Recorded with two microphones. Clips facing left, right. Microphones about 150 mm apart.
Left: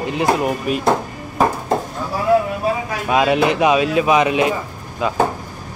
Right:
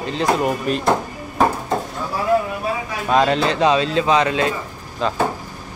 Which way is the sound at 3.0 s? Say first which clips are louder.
Left 1 dB; 10° left (ahead or behind).